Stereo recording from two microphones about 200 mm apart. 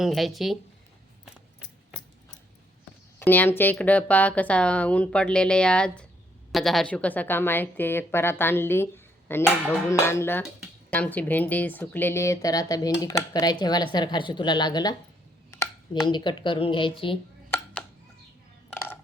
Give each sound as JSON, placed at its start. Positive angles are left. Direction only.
{"t": 0.0, "sound": "speech", "side_deg": 0}
{"t": 3.2, "sound": "a woman's voice", "side_deg": 10}
{"t": 18.7, "sound": "a sound", "side_deg": 10}